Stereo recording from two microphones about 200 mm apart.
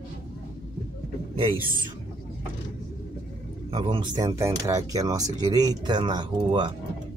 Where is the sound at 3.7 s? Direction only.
25° right (ahead or behind).